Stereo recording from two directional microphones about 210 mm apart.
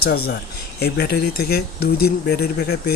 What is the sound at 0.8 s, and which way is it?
Speech, 50° left (ahead or behind).